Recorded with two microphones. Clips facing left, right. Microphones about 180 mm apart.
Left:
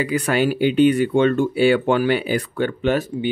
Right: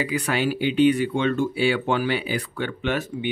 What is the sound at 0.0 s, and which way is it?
Speech, 45° left (ahead or behind).